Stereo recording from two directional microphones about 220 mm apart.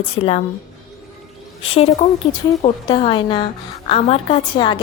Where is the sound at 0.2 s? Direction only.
25° left (ahead or behind).